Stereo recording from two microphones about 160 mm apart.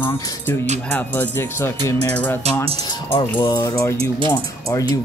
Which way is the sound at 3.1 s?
30° left (ahead or behind).